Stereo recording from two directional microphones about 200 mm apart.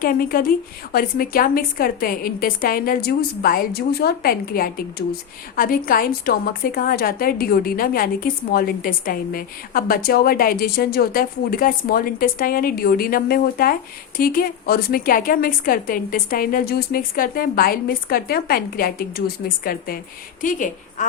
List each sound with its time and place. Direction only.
0.0 s a woman's voice: 45° left (ahead or behind)